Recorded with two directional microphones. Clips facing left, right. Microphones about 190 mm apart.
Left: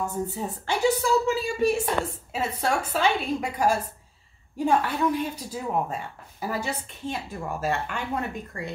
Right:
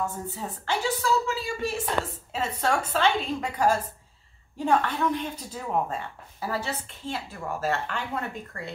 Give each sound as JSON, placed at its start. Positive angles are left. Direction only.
{"t": 0.0, "sound": "a woman's voice", "side_deg": 15}